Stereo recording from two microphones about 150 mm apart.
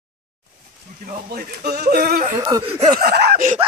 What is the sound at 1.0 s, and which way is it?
Speech, 70° right (ahead or behind).